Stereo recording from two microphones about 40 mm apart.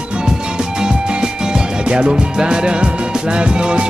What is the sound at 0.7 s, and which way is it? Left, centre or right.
Music, centre.